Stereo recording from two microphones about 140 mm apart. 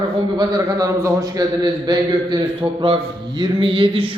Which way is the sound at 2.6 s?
10° right (ahead or behind).